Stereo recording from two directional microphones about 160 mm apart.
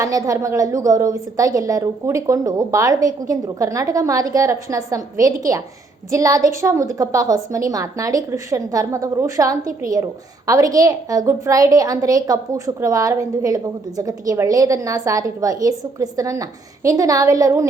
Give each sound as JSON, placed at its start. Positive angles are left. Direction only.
{"t": 0.0, "sound": "a woman's voice", "side_deg": -20}